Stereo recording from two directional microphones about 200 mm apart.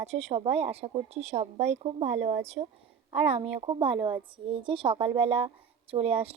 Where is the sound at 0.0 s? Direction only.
30° right (ahead or behind).